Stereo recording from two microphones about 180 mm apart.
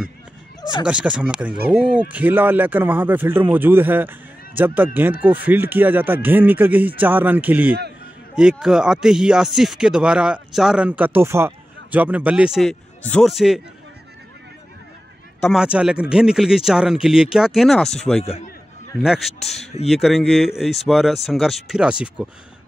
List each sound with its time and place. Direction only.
0.6 s a sound: 25° left (ahead or behind)
0.8 s a man's voice: 5° right (ahead or behind)
15.4 s speech: 5° right (ahead or behind)